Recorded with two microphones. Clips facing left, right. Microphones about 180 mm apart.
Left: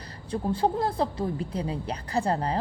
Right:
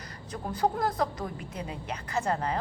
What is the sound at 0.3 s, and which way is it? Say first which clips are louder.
A woman's voice: left 4 dB; 30° left (ahead or behind).